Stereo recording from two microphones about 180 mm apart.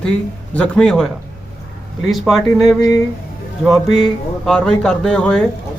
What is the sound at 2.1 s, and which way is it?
Speech, centre (ahead or behind).